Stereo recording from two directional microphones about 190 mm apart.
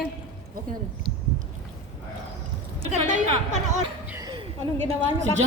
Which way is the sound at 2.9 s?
40° right (ahead or behind).